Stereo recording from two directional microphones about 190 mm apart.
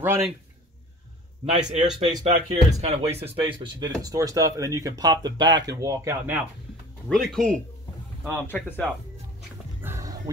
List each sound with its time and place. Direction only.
0.0 s a man's voice: 10° right (ahead or behind)
1.4 s speech: 35° right (ahead or behind)
2.0 s speech: 20° right (ahead or behind)
2.5 s speech: 35° right (ahead or behind); by 6.4 s 10° right (ahead or behind)
7.1 s speech: centre (ahead or behind)
9.8 s music: 15° right (ahead or behind)